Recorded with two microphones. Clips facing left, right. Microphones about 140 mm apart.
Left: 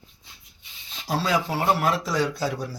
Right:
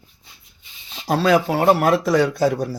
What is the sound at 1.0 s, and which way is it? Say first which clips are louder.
Speech: right 8 dB; 65° right (ahead or behind).